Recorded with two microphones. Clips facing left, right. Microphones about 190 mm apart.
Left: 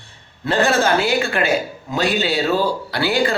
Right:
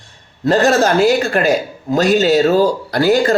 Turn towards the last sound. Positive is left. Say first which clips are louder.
# right 6 dB
turn(degrees=-45)  # may be behind; listen again after turning